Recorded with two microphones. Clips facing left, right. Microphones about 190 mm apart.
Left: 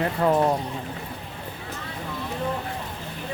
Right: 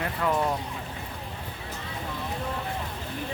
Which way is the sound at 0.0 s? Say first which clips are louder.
Left 6 dB; 35° left (ahead or behind).